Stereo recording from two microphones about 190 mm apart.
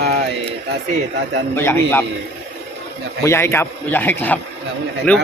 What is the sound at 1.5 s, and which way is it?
Speech, 10° left (ahead or behind).